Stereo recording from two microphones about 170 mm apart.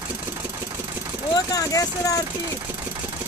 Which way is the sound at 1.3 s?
20° left (ahead or behind).